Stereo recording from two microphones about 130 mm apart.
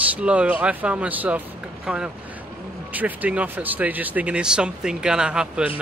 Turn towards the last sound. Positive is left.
turn(degrees=-5)  # may be behind; listen again after turning